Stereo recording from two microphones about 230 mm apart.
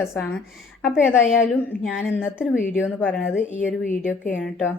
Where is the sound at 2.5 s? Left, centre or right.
Centre.